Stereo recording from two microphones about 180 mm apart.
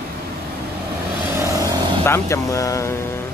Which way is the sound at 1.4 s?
20° right (ahead or behind).